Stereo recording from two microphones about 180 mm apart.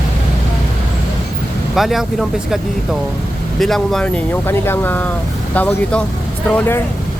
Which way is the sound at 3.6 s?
Centre (ahead or behind).